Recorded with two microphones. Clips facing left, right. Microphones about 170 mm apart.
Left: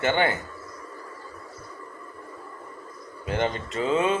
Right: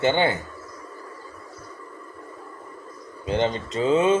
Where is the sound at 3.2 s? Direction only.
25° right (ahead or behind).